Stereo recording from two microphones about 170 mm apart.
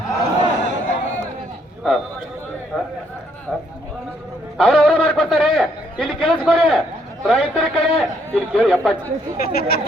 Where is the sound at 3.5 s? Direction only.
5° left (ahead or behind).